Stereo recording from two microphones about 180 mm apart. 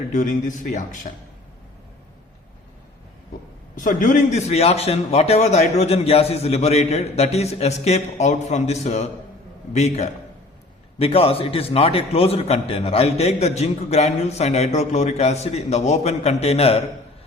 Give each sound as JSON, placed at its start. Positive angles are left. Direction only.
{"t": 0.1, "sound": "speech", "side_deg": 45}
{"t": 3.8, "sound": "a man's voice", "side_deg": 45}